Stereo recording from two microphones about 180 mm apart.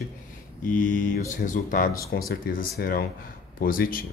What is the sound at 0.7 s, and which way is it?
Speech, 45° left (ahead or behind).